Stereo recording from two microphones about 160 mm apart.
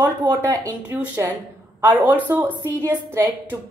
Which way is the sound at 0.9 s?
10° right (ahead or behind).